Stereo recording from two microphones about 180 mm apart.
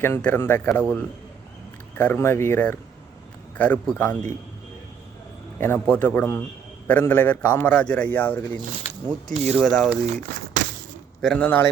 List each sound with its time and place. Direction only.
0.0 s a man's voice: 10° left (ahead or behind)
5.5 s a man's voice: 10° left (ahead or behind)
9.3 s speech: 35° right (ahead or behind)
9.6 s speech: 5° left (ahead or behind)
11.2 s a man's voice: 5° left (ahead or behind)